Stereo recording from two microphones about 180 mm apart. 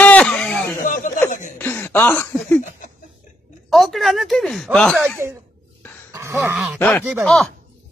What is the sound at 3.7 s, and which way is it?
Speech, centre (ahead or behind).